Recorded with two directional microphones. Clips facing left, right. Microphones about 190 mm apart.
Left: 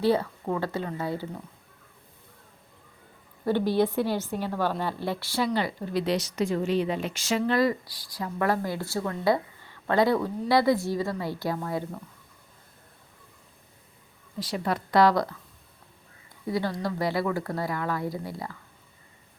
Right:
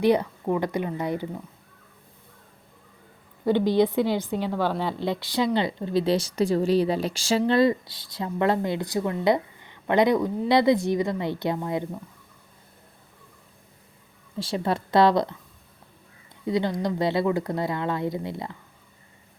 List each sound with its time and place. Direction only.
0.0 s speech: 15° right (ahead or behind)
3.4 s speech: 15° right (ahead or behind)
14.3 s speech: 25° right (ahead or behind)
16.5 s speech: 20° right (ahead or behind)